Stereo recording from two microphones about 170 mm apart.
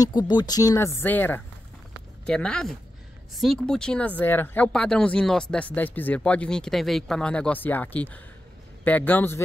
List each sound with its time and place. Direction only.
0.0 s speech: 25° left (ahead or behind)